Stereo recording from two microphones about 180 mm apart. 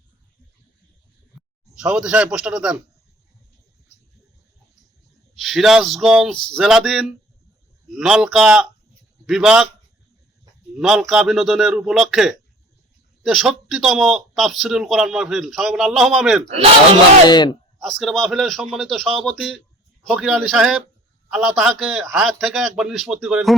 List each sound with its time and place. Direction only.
1.4 s speech: 5° right (ahead or behind)
5.3 s speech: centre (ahead or behind)
10.8 s speech: centre (ahead or behind)
16.5 s speech: 30° right (ahead or behind)
17.2 s speech: 25° left (ahead or behind)
17.7 s speech: centre (ahead or behind)